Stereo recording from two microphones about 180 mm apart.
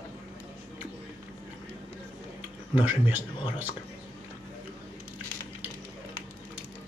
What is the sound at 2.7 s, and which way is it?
Speech, 10° right (ahead or behind).